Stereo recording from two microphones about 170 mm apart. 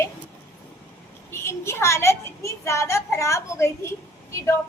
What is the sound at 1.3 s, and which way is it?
A woman's voice, 15° left (ahead or behind).